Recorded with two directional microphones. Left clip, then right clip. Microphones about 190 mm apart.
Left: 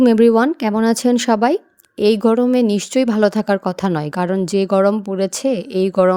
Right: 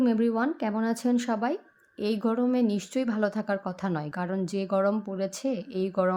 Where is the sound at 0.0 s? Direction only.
60° left (ahead or behind).